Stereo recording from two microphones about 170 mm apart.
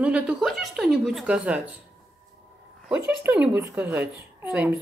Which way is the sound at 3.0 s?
10° right (ahead or behind).